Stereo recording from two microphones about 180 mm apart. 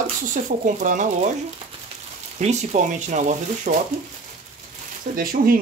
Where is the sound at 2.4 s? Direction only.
40° right (ahead or behind).